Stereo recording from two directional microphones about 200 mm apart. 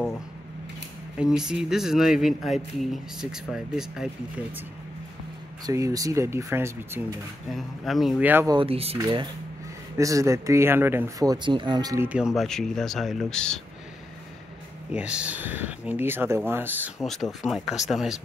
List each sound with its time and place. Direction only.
1.2 s speech: 5° right (ahead or behind)
5.7 s speech: 15° right (ahead or behind)
7.5 s speech: centre (ahead or behind)
8.5 s speech: 30° right (ahead or behind); by 12.3 s 10° right (ahead or behind)
12.4 s speech: centre (ahead or behind)
14.9 s speech: 5° right (ahead or behind)
17.0 s speech: centre (ahead or behind)